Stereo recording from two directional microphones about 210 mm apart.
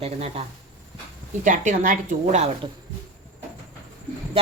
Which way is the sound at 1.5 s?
40° right (ahead or behind).